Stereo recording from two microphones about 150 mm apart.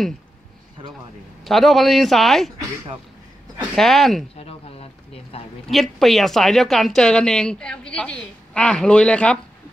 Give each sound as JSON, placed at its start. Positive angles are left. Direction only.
{"t": 1.4, "sound": "speech", "side_deg": 0}
{"t": 3.7, "sound": "speech", "side_deg": 0}
{"t": 4.4, "sound": "a sound", "side_deg": 40}
{"t": 5.7, "sound": "speech", "side_deg": 0}